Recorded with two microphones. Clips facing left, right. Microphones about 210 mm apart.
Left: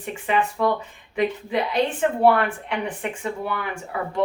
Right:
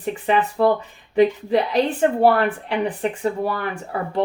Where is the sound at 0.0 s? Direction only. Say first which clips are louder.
Right 3 dB; 35° right (ahead or behind).